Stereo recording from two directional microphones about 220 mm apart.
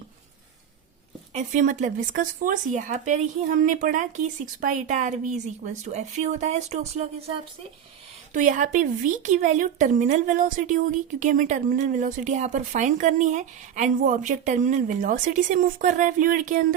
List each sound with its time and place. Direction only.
1.3 s speech: 35° right (ahead or behind)
8.3 s speech: 35° right (ahead or behind)